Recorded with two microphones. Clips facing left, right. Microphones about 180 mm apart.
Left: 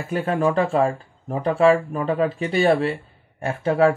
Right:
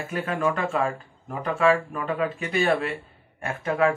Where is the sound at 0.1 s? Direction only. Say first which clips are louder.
Left 6 dB; 30° left (ahead or behind).